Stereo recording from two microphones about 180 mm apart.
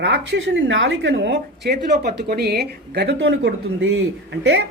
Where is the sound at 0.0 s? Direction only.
75° right (ahead or behind).